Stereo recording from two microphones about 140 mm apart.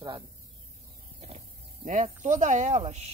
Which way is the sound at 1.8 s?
65° right (ahead or behind).